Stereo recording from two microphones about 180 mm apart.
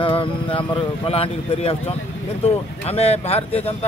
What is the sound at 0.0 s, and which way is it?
A man's voice, 30° left (ahead or behind).